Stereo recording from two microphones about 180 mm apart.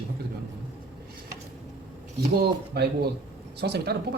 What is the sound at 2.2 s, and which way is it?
Speech, 60° right (ahead or behind).